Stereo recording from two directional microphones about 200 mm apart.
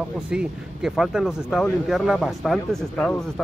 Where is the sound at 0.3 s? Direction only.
5° right (ahead or behind).